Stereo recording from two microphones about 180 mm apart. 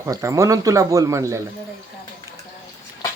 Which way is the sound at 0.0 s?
15° right (ahead or behind).